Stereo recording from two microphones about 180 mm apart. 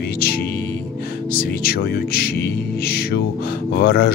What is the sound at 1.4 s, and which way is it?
Speech, 60° left (ahead or behind).